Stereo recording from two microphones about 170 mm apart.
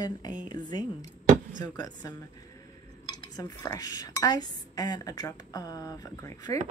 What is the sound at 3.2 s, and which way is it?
Speech, 20° left (ahead or behind).